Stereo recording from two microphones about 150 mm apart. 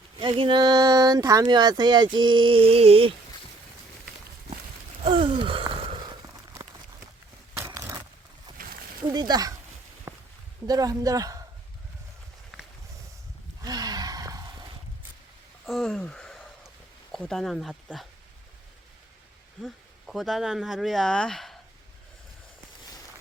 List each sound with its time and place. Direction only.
0.2 s speech: 35° right (ahead or behind)
2.1 s a sound: 30° right (ahead or behind)
5.0 s a sound: 35° right (ahead or behind)
9.0 s speech: 25° right (ahead or behind)
10.1 s a sound: 15° right (ahead or behind)
10.7 s speech: 25° right (ahead or behind)
13.6 s gasp: 25° right (ahead or behind)
15.6 s speech: centre (ahead or behind)
19.6 s speech: centre (ahead or behind)